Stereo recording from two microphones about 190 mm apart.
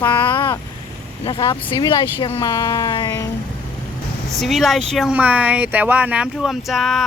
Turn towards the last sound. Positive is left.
turn(degrees=0)  # may be behind; listen again after turning